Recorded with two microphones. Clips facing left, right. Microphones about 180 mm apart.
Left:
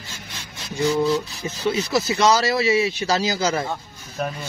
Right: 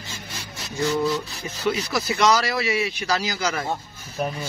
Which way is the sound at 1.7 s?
25° left (ahead or behind).